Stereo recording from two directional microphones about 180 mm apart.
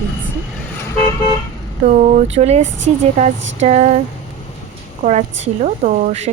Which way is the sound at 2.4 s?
35° right (ahead or behind).